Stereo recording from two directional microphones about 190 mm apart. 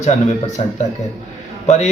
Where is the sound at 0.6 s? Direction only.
40° left (ahead or behind).